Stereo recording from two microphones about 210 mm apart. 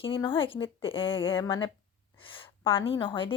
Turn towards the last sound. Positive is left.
turn(degrees=25)  # may be behind; listen again after turning